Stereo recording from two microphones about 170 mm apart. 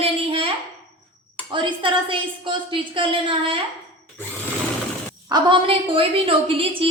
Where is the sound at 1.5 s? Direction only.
30° right (ahead or behind).